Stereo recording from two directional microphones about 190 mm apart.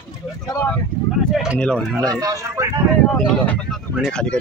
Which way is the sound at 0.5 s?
15° left (ahead or behind).